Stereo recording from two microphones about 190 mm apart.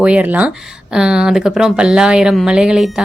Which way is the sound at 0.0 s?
5° right (ahead or behind).